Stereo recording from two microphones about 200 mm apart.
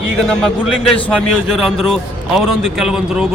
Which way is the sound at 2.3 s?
Centre (ahead or behind).